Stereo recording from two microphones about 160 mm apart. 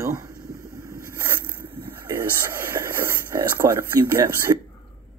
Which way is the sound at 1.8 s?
15° right (ahead or behind).